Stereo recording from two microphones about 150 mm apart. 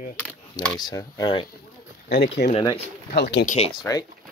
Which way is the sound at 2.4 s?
90° left.